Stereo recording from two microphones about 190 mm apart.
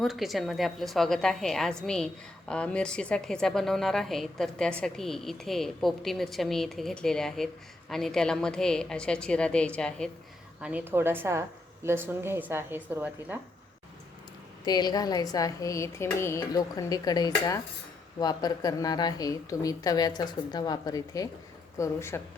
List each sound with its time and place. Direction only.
0.0 s a woman's voice: centre (ahead or behind)
10.6 s speech: 5° right (ahead or behind)
14.6 s a woman's voice: 20° left (ahead or behind)